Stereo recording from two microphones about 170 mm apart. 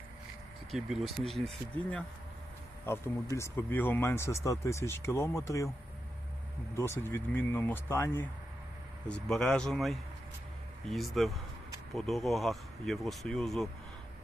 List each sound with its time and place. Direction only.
0.7 s speech: centre (ahead or behind); by 5.7 s 15° left (ahead or behind)
6.7 s speech: 15° left (ahead or behind)